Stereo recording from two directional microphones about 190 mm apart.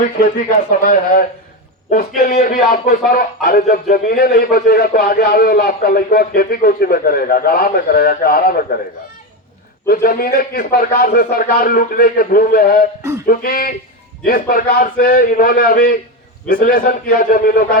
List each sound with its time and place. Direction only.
0.7 s a man's voice: 45° left (ahead or behind)
9.8 s a man's voice: 50° left (ahead or behind)
13.0 s a sound: 15° right (ahead or behind)
13.2 s a man's voice: 50° left (ahead or behind)